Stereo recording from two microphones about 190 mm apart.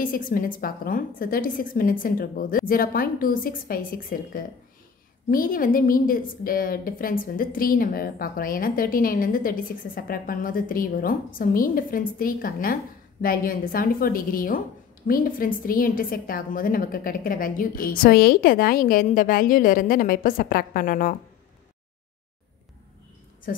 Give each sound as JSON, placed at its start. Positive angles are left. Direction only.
{"t": 0.0, "sound": "a woman's voice", "side_deg": 45}